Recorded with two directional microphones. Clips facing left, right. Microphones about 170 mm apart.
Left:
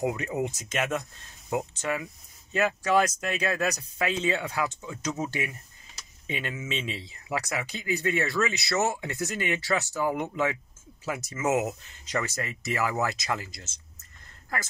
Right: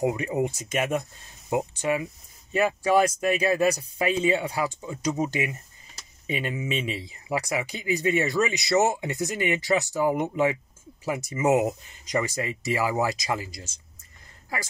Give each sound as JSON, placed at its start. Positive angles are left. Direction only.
{"t": 0.0, "sound": "speech", "side_deg": -5}